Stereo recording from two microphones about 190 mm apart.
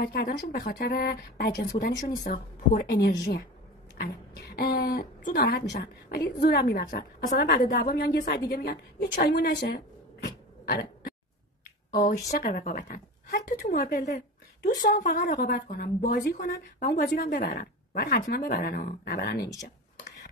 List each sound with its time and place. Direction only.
0.0 s a woman's voice: 50° left (ahead or behind)
3.0 s a woman's voice: 60° left (ahead or behind)
10.2 s a sound: 50° left (ahead or behind)
11.9 s a woman's voice: 55° left (ahead or behind)